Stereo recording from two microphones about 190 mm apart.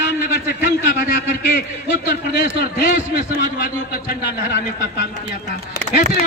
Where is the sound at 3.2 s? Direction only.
50° left (ahead or behind).